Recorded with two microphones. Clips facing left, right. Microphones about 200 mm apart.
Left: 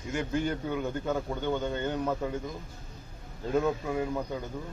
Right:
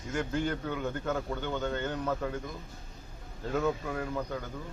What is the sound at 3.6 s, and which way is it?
Speech, 15° left (ahead or behind).